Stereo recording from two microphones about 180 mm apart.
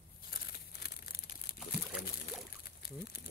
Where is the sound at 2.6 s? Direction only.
60° left (ahead or behind).